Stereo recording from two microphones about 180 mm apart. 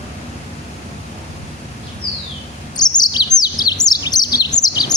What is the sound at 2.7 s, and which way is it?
Chirp, 25° left (ahead or behind).